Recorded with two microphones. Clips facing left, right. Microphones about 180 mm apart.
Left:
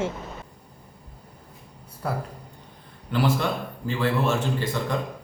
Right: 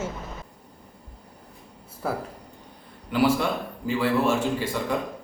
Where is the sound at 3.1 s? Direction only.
10° right (ahead or behind).